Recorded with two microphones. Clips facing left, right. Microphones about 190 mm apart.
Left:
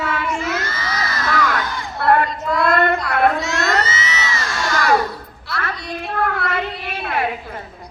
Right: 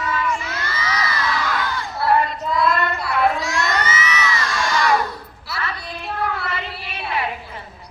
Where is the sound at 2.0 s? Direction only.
55° left (ahead or behind).